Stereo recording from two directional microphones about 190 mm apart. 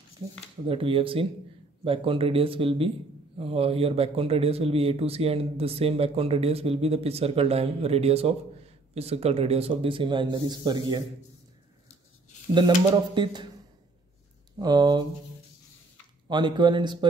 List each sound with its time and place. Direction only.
0.7 s speech: 30° right (ahead or behind)
12.5 s speech: 25° right (ahead or behind)
14.6 s speech: 20° right (ahead or behind)
16.3 s speech: 25° right (ahead or behind)